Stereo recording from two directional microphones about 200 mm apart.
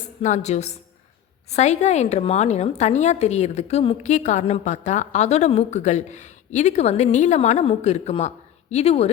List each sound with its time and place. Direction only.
0.2 s a woman's voice: 35° left (ahead or behind)